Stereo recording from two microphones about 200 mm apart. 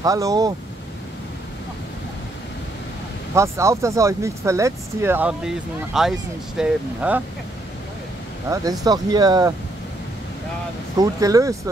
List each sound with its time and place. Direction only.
0.0 s speech: 15° right (ahead or behind)
3.3 s speech: 15° right (ahead or behind)
8.5 s speech: 20° right (ahead or behind)
11.0 s speech: 15° right (ahead or behind)